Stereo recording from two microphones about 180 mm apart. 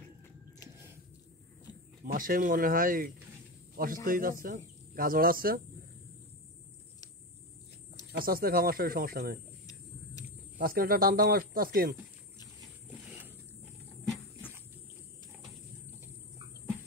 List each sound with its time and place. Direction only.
2.0 s speech: 50° right (ahead or behind)
8.1 s speech: 55° right (ahead or behind)
10.6 s speech: 55° right (ahead or behind)